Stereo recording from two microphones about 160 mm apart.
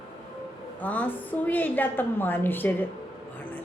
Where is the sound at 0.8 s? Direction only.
10° left (ahead or behind).